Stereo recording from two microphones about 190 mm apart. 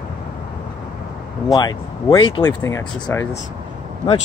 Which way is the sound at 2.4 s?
15° left (ahead or behind).